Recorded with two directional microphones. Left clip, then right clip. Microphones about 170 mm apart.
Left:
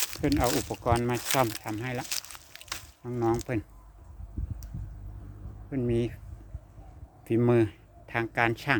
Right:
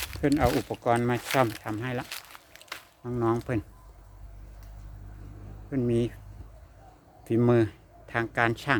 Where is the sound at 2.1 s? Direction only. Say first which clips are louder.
Left 4 dB; 85° left.